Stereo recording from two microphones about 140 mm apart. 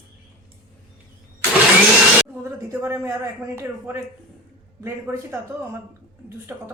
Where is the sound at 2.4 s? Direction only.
15° right (ahead or behind).